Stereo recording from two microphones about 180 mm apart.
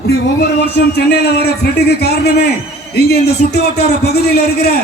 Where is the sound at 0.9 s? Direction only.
65° left (ahead or behind).